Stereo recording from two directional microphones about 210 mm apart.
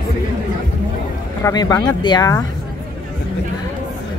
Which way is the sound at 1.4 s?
20° left (ahead or behind).